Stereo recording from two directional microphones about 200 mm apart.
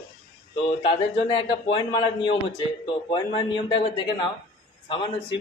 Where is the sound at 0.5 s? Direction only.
25° left (ahead or behind).